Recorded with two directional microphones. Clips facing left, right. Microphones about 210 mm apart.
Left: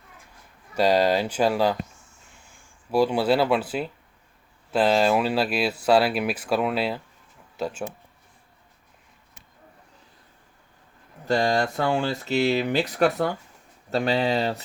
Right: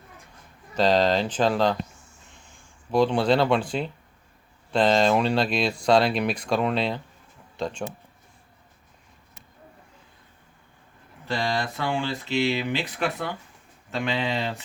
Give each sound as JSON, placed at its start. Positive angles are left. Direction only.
{"t": 0.8, "sound": "speech", "side_deg": 10}
{"t": 11.3, "sound": "speech", "side_deg": 45}